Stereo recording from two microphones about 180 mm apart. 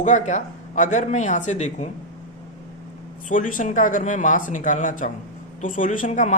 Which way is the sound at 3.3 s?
50° left (ahead or behind).